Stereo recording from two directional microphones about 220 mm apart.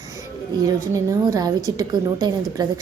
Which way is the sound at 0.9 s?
15° right (ahead or behind).